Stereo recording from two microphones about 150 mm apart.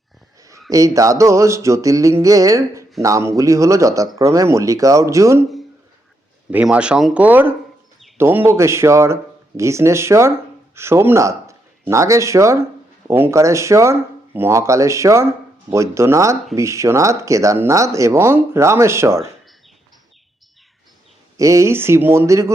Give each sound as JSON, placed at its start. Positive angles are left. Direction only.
{"t": 0.7, "sound": "speech", "side_deg": -20}
{"t": 6.5, "sound": "speech", "side_deg": -10}
{"t": 21.3, "sound": "speech", "side_deg": -20}